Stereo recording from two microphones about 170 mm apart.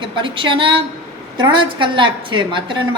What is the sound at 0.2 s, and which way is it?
A woman's voice, 30° right (ahead or behind).